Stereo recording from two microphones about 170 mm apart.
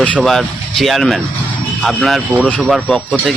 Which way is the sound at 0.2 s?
Centre (ahead or behind).